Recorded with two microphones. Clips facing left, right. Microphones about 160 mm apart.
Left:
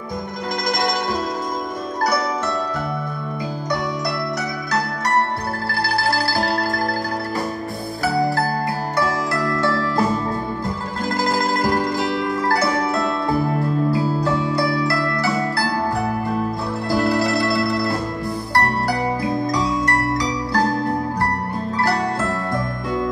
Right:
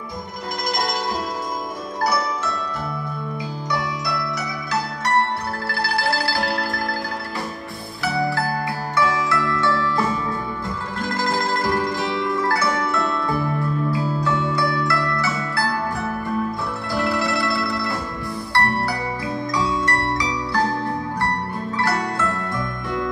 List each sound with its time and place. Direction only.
4.0 s zither: 45° left (ahead or behind)
5.7 s music: 40° left (ahead or behind)
8.0 s zither: 40° left (ahead or behind)
8.9 s music: 40° left (ahead or behind)
21.7 s zither: 35° left (ahead or behind)